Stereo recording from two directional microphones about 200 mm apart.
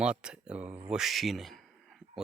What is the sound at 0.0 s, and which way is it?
Speech, 5° right (ahead or behind).